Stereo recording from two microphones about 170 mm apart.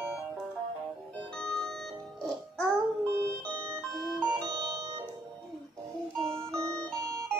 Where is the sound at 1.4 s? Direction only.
5° left (ahead or behind).